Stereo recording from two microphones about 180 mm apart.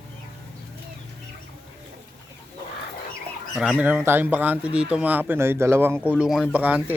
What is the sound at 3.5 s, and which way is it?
Speech, 5° right (ahead or behind).